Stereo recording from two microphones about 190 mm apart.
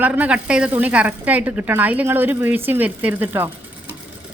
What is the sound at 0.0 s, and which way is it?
A woman's voice, 10° right (ahead or behind).